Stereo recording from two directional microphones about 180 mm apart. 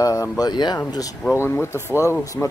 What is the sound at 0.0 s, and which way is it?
Speech, 20° left (ahead or behind).